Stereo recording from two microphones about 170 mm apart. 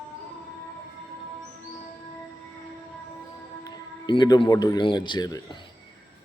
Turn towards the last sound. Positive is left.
turn(degrees=20)  # may be behind; listen again after turning